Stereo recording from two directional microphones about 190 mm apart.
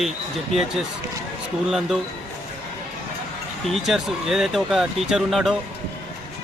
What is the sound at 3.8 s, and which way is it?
Speech, centre (ahead or behind).